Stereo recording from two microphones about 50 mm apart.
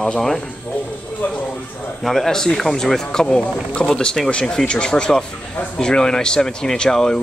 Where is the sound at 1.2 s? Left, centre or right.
Left.